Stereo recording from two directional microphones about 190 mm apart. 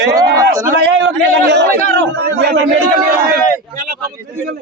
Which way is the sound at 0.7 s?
65° right (ahead or behind).